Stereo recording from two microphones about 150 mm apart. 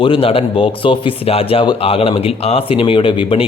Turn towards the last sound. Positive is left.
turn(degrees=35)  # may be behind; listen again after turning